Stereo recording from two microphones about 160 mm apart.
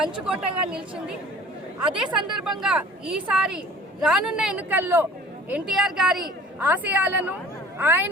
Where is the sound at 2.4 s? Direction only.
5° right (ahead or behind).